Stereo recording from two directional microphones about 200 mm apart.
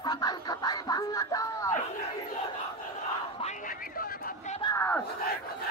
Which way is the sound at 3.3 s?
40° left (ahead or behind).